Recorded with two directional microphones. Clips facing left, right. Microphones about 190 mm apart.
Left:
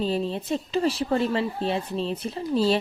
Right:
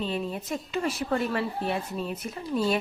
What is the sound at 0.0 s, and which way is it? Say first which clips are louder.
A woman's voice: left 4 dB; 30° left (ahead or behind).